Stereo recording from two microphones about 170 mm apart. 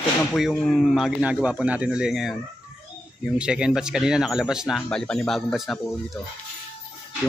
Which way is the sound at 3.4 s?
5° right (ahead or behind).